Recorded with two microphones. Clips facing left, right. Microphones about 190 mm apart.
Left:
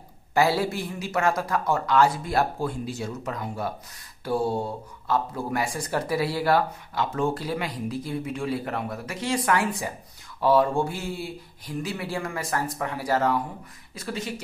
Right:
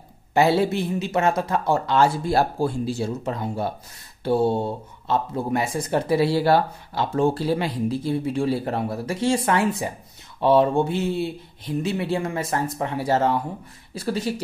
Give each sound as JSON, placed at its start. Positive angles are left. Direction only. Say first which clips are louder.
{"t": 0.3, "sound": "speech", "louder": "right 4 dB", "side_deg": -25}